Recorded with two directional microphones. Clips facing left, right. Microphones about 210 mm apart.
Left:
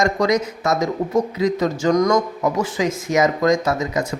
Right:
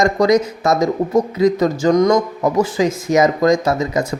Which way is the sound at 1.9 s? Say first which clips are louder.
Right 3 dB; 25° right (ahead or behind).